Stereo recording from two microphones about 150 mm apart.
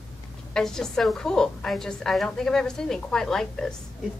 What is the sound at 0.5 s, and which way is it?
A woman's voice, 5° left (ahead or behind).